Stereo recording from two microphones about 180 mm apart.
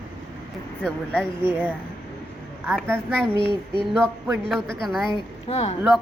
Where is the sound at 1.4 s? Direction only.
10° right (ahead or behind).